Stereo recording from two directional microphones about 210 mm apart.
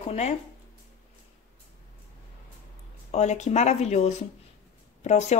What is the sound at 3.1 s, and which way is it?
A woman's voice, 35° left (ahead or behind).